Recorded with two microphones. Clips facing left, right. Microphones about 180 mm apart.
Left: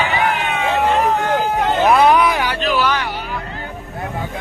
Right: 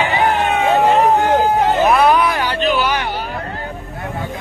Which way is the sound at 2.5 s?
Centre (ahead or behind).